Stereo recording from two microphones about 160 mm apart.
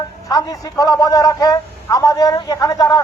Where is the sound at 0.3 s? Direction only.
20° left (ahead or behind).